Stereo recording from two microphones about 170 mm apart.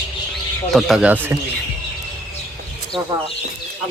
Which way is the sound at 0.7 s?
5° right (ahead or behind).